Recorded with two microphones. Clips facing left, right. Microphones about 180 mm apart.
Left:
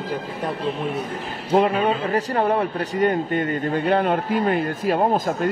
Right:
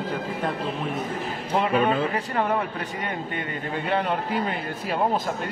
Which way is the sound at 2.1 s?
35° left (ahead or behind).